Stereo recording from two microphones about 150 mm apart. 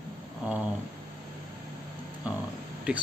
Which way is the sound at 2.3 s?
10° right (ahead or behind).